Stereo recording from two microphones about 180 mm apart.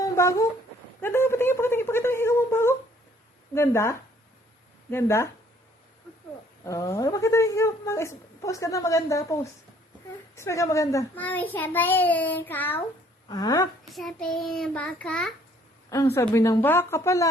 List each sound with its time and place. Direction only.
0.0 s a sound: 15° left (ahead or behind)
3.5 s a woman's voice: 15° left (ahead or behind)
6.7 s a woman's voice: 15° left (ahead or behind)
13.2 s speech: 20° left (ahead or behind)
13.8 s a child's voice: centre (ahead or behind)
16.1 s a woman's voice: 15° left (ahead or behind)